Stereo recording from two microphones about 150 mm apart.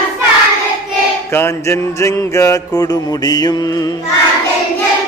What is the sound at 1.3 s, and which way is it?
Music, 15° left (ahead or behind).